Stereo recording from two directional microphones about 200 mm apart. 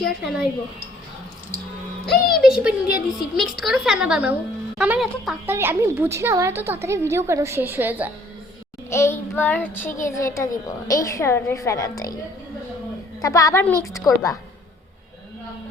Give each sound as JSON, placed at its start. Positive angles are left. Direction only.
{"t": 0.0, "sound": "a woman's voice", "side_deg": 0}
{"t": 2.3, "sound": "a woman's voice", "side_deg": -5}
{"t": 8.9, "sound": "a woman's voice", "side_deg": 15}
{"t": 13.2, "sound": "a woman's voice", "side_deg": 15}